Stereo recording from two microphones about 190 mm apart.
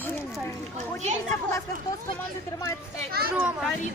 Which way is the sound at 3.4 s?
5° right (ahead or behind).